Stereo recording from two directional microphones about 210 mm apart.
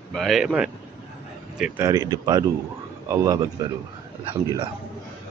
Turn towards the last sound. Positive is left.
turn(degrees=-20)  # may be behind; listen again after turning